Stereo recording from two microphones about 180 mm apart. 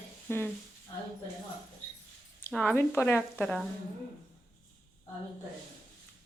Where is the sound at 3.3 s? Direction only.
Centre (ahead or behind).